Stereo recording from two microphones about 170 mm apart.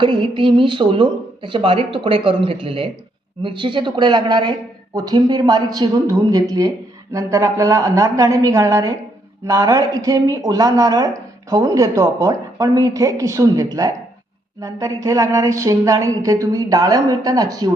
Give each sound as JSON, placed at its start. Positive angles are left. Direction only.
{"t": 0.0, "sound": "speech", "side_deg": -30}